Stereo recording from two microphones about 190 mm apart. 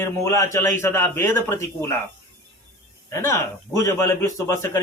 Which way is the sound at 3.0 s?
15° left (ahead or behind).